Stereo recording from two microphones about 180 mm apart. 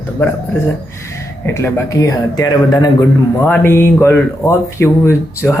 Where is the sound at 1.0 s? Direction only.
15° left (ahead or behind).